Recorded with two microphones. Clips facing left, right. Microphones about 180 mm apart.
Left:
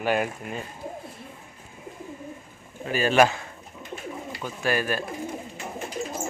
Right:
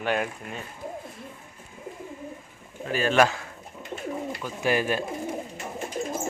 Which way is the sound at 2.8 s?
5° left (ahead or behind).